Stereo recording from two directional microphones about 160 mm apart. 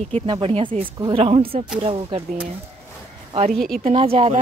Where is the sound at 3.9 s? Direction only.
35° right (ahead or behind).